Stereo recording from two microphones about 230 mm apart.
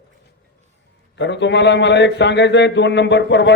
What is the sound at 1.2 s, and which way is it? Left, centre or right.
A man's voice, left.